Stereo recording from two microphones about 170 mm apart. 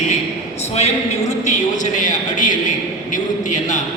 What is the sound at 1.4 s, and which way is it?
A man's voice, 45° left (ahead or behind).